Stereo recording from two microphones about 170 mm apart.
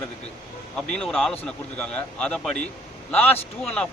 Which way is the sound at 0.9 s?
5° left (ahead or behind).